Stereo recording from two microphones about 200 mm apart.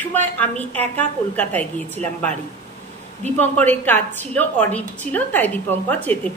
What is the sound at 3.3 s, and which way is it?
A woman's voice, 10° left (ahead or behind).